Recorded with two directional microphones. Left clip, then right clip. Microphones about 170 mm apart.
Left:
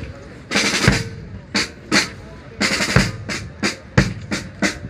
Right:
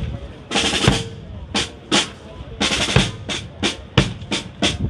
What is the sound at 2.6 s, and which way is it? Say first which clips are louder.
Music: even; 45° right (ahead or behind).